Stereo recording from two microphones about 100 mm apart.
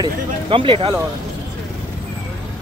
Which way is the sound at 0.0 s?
60° right (ahead or behind).